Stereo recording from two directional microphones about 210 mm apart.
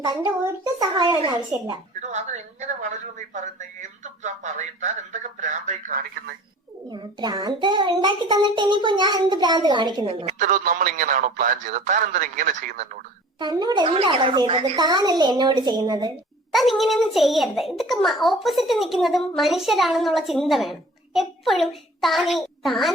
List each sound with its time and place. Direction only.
0.0 s a child's voice: 20° right (ahead or behind)
2.0 s speech: 35° right (ahead or behind)
6.9 s a child's voice: 20° right (ahead or behind)
10.4 s speech: 40° right (ahead or behind)
13.4 s a child's voice: 20° right (ahead or behind)
16.5 s a child's voice: centre (ahead or behind)